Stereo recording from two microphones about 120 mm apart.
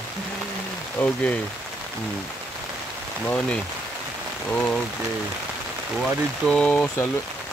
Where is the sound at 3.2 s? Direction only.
10° left (ahead or behind).